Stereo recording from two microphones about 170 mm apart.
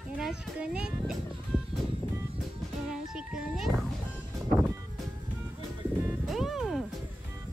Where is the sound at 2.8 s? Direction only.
5° right (ahead or behind).